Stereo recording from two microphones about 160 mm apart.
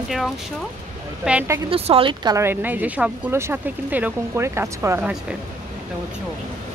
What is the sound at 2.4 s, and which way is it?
Speech, 10° right (ahead or behind).